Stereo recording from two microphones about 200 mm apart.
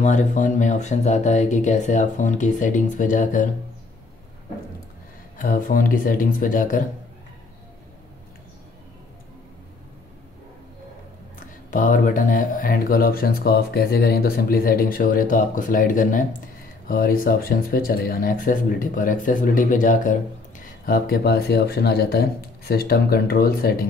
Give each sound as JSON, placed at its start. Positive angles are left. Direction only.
{"t": 0.0, "sound": "speech", "side_deg": 40}
{"t": 5.4, "sound": "speech", "side_deg": 40}
{"t": 11.3, "sound": "speech", "side_deg": 40}